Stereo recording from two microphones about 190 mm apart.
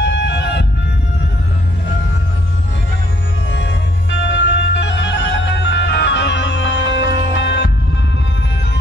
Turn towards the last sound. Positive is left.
turn(degrees=65)  # may be behind; listen again after turning